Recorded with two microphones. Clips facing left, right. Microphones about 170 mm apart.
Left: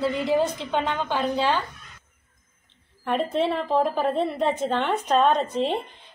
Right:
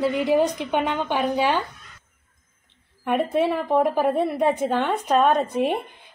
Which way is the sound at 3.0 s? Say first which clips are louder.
Right 2 dB; 10° right (ahead or behind).